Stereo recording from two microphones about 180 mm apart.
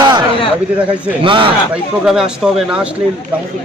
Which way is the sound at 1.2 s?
30° right (ahead or behind).